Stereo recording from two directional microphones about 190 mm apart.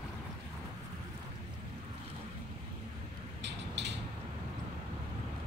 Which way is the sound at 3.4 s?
65° right (ahead or behind).